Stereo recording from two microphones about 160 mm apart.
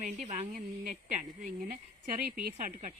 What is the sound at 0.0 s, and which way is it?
Speech, 50° right (ahead or behind).